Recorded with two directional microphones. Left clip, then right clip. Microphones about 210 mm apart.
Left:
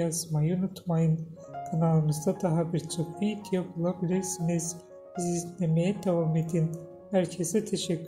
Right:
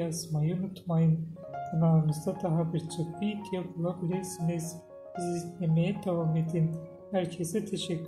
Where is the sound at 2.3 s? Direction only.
25° left (ahead or behind).